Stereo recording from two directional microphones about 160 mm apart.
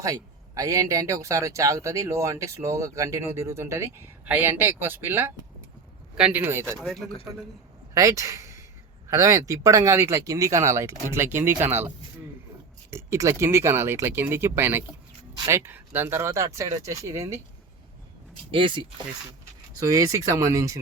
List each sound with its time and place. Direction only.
0.0 s speech: 20° right (ahead or behind)
6.7 s speech: centre (ahead or behind)
7.9 s speech: 20° right (ahead or behind)
12.9 s speech: 15° right (ahead or behind)
18.5 s speech: 30° right (ahead or behind)
19.8 s speech: 20° right (ahead or behind)